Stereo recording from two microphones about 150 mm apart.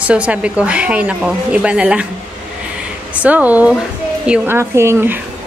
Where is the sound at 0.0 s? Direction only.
10° right (ahead or behind).